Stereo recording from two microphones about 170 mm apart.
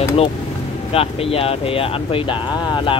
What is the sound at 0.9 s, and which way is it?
Speech, 35° left (ahead or behind).